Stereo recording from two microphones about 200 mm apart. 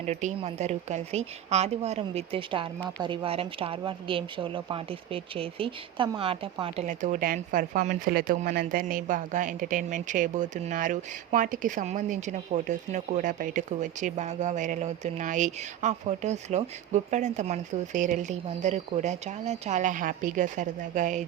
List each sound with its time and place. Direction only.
0.0 s a woman's voice: 35° right (ahead or behind)